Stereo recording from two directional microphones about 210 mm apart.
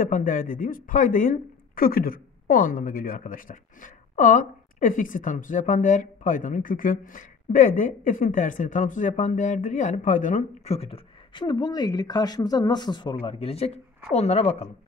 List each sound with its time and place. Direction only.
0.0 s speech: 40° left (ahead or behind)